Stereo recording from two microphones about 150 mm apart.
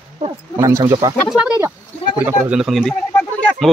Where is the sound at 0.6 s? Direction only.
20° right (ahead or behind).